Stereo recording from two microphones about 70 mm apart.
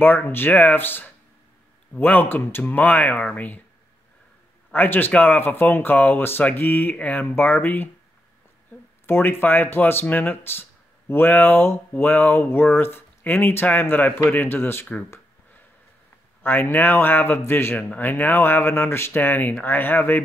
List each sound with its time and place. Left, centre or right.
0.0 s speech: left
4.7 s speech: left
9.0 s speech: left
16.4 s speech: left